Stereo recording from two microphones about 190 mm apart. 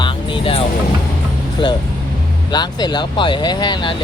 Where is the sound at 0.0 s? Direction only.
25° left (ahead or behind).